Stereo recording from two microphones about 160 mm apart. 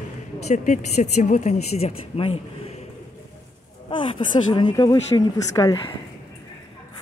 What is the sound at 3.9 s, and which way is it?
Speech, 30° left (ahead or behind).